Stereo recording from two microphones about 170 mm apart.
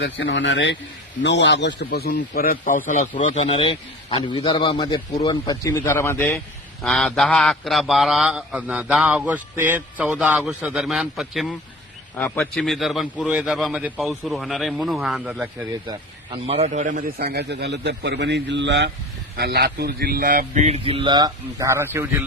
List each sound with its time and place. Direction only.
0.0 s a man's voice: 90° left; by 3.4 s 45° left (ahead or behind)
3.4 s a man's voice: 30° left (ahead or behind); by 6.3 s 15° left (ahead or behind)
6.8 s speech: 5° left (ahead or behind)
12.1 s speech: 10° left (ahead or behind)
15.9 s a man's voice: 30° right (ahead or behind); by 18.9 s 90° right
19.4 s a man's voice: 70° right (ahead or behind)
20.1 s speech: 50° right (ahead or behind); by 22.1 s 15° right (ahead or behind)